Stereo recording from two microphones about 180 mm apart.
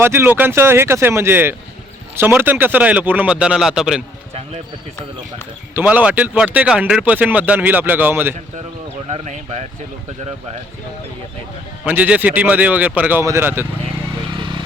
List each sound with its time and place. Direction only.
0.0 s speech: 15° right (ahead or behind)
5.7 s speech: 10° right (ahead or behind)
9.0 s speech: 40° right (ahead or behind)
11.9 s speech: 10° right (ahead or behind)